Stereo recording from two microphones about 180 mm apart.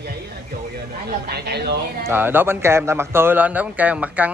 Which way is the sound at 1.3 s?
65° right (ahead or behind).